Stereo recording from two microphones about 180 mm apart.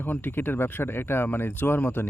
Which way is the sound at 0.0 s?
10° left (ahead or behind).